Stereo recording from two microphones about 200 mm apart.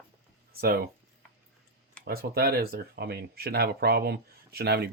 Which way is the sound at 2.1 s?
50° right (ahead or behind).